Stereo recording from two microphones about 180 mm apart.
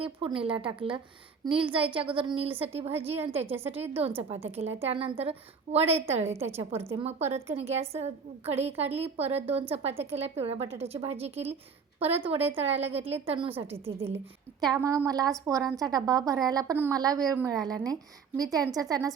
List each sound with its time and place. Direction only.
0.0 s a woman's voice: 30° right (ahead or behind)
4.8 s a woman's voice: 30° right (ahead or behind)